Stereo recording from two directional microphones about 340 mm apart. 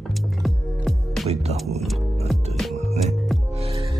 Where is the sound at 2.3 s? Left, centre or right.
Centre.